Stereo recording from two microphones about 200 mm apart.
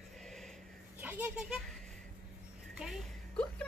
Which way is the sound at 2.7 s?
Centre (ahead or behind).